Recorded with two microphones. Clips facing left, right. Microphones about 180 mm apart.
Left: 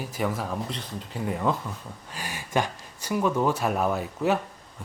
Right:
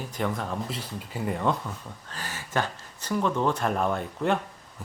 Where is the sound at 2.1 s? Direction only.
10° left (ahead or behind).